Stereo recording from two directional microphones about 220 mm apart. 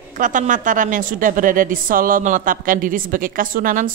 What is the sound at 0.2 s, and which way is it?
A woman's voice, 35° right (ahead or behind).